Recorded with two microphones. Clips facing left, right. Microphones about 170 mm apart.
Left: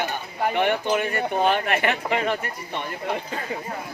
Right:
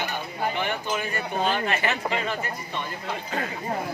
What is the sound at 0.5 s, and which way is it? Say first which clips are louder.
Speech: left 6 dB; 65° left (ahead or behind).